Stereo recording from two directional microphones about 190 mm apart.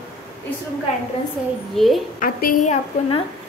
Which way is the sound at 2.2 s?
45° left (ahead or behind).